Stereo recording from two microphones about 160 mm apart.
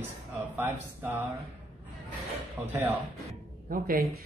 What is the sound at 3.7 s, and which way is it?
Speech, 65° right (ahead or behind).